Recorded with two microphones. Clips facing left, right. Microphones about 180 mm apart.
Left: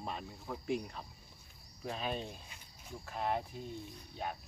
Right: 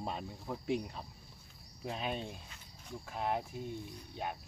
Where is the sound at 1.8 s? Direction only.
15° right (ahead or behind).